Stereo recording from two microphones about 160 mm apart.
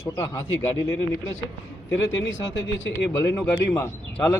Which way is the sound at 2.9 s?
15° left (ahead or behind).